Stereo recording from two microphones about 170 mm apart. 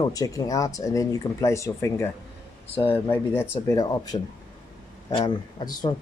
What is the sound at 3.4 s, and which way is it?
Speech, 20° left (ahead or behind).